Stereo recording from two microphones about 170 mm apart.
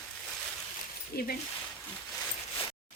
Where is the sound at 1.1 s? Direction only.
65° left (ahead or behind).